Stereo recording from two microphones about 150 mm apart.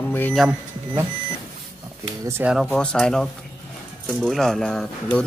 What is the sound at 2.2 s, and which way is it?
Speech, 15° right (ahead or behind).